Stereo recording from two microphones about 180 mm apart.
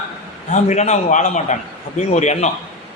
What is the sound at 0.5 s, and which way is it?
A man's voice, 40° left (ahead or behind).